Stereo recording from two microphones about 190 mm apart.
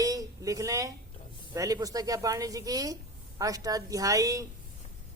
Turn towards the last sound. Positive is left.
turn(degrees=-15)  # may be behind; listen again after turning